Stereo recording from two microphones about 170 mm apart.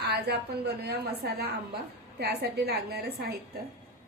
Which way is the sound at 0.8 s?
70° right (ahead or behind).